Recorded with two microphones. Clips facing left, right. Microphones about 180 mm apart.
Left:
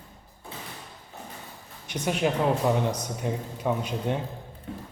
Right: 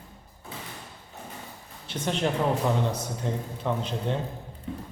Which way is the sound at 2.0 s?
10° left (ahead or behind).